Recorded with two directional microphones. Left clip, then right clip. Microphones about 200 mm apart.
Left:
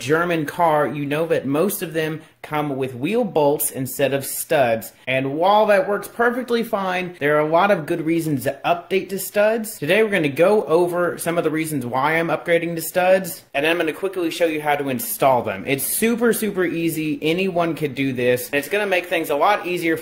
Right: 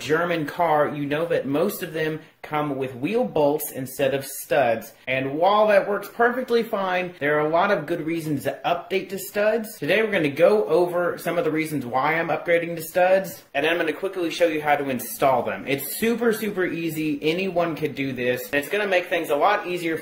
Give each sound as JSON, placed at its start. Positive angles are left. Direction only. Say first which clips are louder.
{"t": 0.1, "sound": "speech", "louder": "left 3 dB", "side_deg": 30}